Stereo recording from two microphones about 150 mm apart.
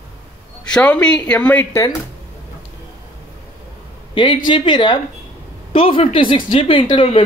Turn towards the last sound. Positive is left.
turn(degrees=35)  # may be behind; listen again after turning